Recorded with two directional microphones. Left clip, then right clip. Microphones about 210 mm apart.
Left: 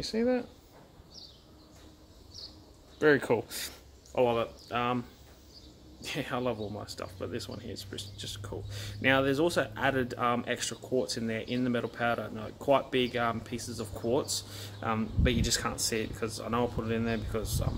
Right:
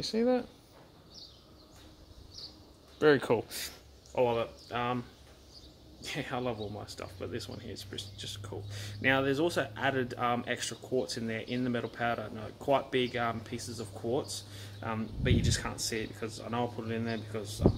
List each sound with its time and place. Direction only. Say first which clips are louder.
0.0 s speech: even; 20° right (ahead or behind)
3.0 s speech: even; 15° right (ahead or behind)
3.5 s speech: left 1 dB; centre (ahead or behind)
6.0 s speech: left 2 dB; centre (ahead or behind)